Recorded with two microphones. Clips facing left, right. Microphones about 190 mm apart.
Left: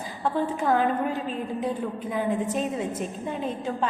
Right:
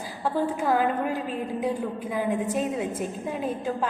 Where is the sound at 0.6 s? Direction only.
5° right (ahead or behind).